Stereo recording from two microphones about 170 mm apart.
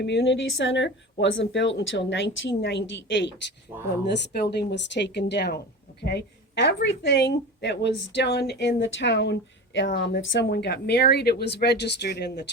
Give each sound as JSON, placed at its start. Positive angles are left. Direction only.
{"t": 0.0, "sound": "a woman's voice", "side_deg": 90}
{"t": 4.0, "sound": "a woman's voice", "side_deg": 75}
{"t": 4.5, "sound": "a woman's voice", "side_deg": 90}
{"t": 6.0, "sound": "a woman's voice", "side_deg": 75}